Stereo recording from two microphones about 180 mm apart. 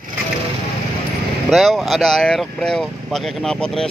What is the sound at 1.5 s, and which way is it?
Speech, centre (ahead or behind).